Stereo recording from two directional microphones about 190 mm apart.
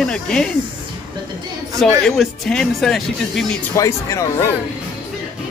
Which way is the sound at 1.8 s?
Centre (ahead or behind).